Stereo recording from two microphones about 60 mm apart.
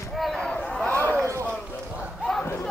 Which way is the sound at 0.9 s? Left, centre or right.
Right.